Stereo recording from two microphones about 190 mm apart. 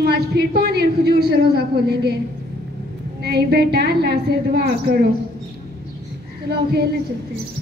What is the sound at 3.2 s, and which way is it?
A man's voice, 55° right (ahead or behind).